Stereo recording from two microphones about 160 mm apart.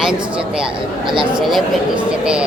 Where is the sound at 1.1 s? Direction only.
30° right (ahead or behind).